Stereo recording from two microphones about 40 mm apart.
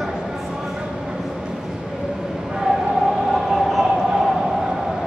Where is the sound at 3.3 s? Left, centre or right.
Centre.